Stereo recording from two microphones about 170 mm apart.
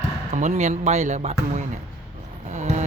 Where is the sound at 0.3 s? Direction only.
45° right (ahead or behind).